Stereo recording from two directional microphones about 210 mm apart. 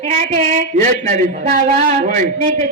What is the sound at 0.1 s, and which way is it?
A woman's voice, 35° right (ahead or behind).